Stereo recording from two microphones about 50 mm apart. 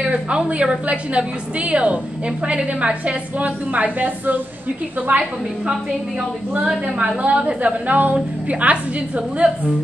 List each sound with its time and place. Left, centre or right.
0.0 s a woman's voice: right
7.0 s a woman's voice: right